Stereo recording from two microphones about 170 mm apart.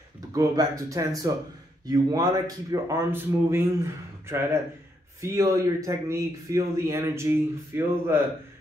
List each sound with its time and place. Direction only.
0.3 s speech: 20° right (ahead or behind)